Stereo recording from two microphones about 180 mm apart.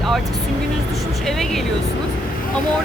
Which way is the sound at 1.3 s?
Centre (ahead or behind).